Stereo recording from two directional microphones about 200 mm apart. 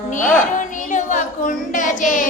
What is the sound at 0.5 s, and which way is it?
Child singing, 40° left (ahead or behind).